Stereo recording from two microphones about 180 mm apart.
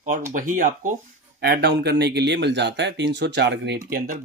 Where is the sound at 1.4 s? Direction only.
65° right (ahead or behind).